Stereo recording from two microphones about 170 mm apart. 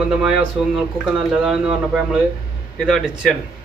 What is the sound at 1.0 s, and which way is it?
Speech, 5° right (ahead or behind).